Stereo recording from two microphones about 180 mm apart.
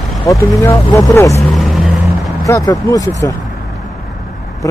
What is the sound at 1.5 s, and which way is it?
Vehicle, centre (ahead or behind).